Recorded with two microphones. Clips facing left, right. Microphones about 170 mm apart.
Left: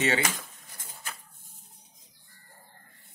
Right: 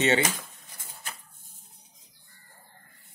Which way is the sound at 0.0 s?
25° right (ahead or behind).